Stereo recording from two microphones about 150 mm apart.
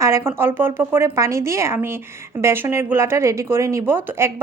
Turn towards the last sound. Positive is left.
turn(degrees=-15)  # may be behind; listen again after turning